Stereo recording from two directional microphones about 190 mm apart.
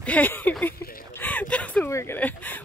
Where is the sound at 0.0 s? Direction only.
10° left (ahead or behind).